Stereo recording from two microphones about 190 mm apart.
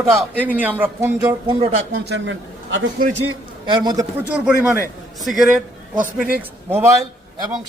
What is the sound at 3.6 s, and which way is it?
Speech, 25° right (ahead or behind).